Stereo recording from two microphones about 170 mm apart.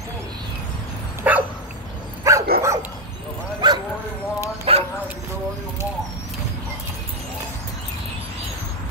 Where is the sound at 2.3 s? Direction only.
20° right (ahead or behind).